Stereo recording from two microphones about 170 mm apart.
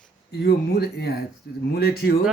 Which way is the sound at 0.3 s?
70° left (ahead or behind).